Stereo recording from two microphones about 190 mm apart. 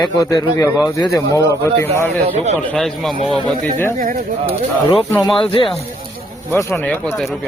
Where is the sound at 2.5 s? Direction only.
10° left (ahead or behind).